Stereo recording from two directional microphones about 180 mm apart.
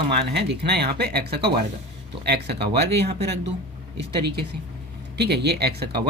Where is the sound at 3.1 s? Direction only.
35° right (ahead or behind).